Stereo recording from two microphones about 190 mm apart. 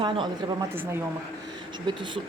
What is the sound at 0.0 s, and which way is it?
Speech, 25° right (ahead or behind).